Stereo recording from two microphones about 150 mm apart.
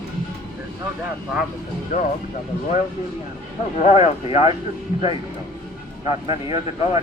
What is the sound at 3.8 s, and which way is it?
Speech, 50° left (ahead or behind).